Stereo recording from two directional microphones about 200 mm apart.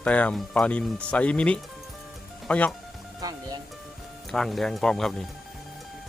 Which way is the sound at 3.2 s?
20° right (ahead or behind).